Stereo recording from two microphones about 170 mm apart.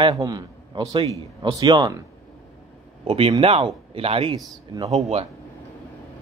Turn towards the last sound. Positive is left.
turn(degrees=-40)  # may be behind; listen again after turning